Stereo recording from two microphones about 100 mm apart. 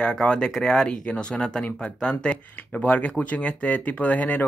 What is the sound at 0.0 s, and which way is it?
Speech, 10° left (ahead or behind).